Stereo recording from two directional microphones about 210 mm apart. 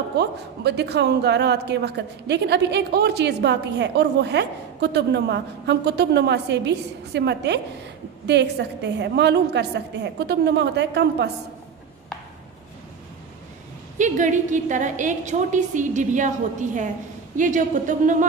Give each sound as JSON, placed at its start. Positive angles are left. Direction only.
{"t": 0.2, "sound": "a woman's voice", "side_deg": -55}
{"t": 13.9, "sound": "a woman's voice", "side_deg": -35}